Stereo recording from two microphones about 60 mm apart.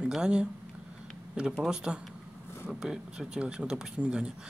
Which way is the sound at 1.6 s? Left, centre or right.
Centre.